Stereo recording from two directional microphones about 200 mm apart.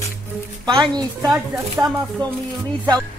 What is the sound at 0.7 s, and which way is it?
Speech, 20° right (ahead or behind).